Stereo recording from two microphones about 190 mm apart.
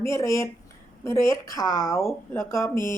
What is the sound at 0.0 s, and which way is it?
Speech, 15° left (ahead or behind).